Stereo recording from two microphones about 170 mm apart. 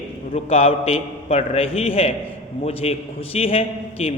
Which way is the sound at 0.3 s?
35° left (ahead or behind).